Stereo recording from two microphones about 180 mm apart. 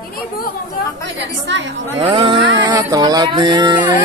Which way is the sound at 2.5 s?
20° right (ahead or behind).